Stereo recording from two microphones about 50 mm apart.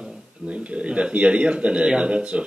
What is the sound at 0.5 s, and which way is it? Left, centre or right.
Speech, right.